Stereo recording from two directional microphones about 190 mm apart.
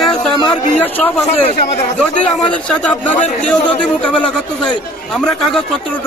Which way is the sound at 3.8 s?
5° left (ahead or behind).